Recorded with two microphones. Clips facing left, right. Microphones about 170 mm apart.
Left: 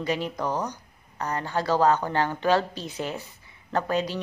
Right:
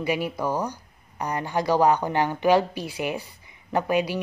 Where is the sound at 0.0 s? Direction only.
10° right (ahead or behind).